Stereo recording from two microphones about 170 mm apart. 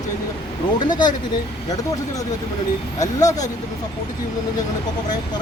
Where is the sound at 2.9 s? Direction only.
20° left (ahead or behind).